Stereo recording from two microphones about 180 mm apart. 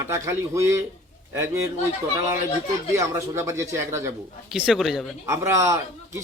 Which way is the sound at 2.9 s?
15° right (ahead or behind).